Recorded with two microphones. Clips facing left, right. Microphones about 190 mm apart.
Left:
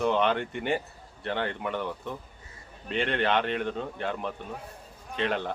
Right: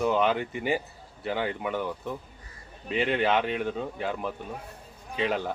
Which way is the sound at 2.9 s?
5° right (ahead or behind).